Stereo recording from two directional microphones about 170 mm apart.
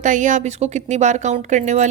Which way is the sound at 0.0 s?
45° right (ahead or behind).